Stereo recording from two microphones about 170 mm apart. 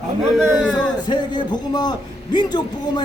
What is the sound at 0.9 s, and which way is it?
A man's voice, 25° left (ahead or behind).